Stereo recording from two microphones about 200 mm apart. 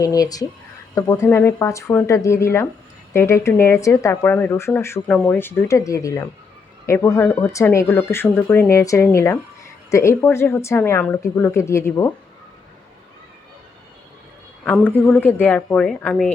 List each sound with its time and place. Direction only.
0.0 s speech: 15° left (ahead or behind)
14.6 s speech: 10° left (ahead or behind)